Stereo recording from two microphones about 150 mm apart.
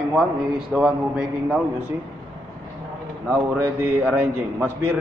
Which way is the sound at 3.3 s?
10° right (ahead or behind).